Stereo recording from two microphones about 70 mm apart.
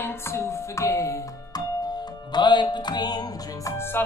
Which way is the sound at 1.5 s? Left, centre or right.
Left.